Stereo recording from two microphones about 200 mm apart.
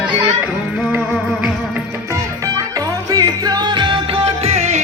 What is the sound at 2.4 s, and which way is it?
Music, 15° right (ahead or behind).